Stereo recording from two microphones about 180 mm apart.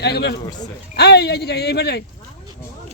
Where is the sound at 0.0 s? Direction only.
65° left (ahead or behind).